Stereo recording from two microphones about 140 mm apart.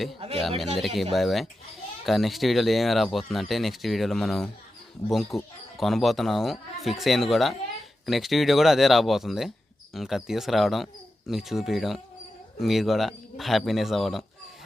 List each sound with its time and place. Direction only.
0.2 s speech: 45° right (ahead or behind)
0.8 s speech: centre (ahead or behind)